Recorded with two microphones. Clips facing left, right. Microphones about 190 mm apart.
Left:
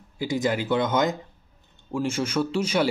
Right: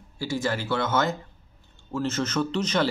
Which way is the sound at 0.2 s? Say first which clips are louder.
Left 3 dB; 15° left (ahead or behind).